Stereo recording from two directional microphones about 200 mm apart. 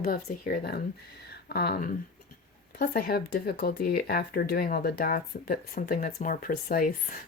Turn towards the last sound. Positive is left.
turn(degrees=45)  # may be behind; listen again after turning